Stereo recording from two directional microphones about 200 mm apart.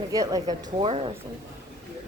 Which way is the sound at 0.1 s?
20° right (ahead or behind).